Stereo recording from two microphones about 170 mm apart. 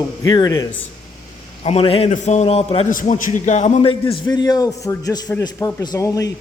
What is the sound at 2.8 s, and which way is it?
A man's voice, 50° left (ahead or behind).